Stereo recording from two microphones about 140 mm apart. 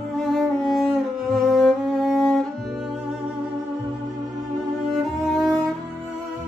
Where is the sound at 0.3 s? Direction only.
Centre (ahead or behind).